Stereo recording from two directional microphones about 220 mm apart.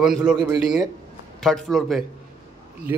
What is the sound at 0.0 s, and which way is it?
A man's voice, 5° right (ahead or behind).